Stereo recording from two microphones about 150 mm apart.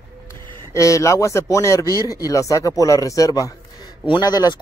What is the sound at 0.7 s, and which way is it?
Speech, 20° left (ahead or behind).